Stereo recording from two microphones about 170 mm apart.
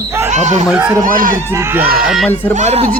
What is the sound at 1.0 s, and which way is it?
Speech, 55° right (ahead or behind).